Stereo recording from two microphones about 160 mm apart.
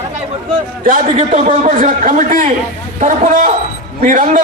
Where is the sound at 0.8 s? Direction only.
55° right (ahead or behind).